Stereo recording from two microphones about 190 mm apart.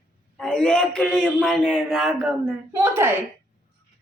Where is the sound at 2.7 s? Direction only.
10° right (ahead or behind).